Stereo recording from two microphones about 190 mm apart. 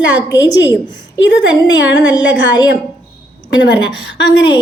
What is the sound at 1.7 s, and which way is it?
Speech, 70° left (ahead or behind).